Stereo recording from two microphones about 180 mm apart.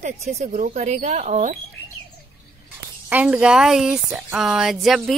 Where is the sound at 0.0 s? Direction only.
40° right (ahead or behind).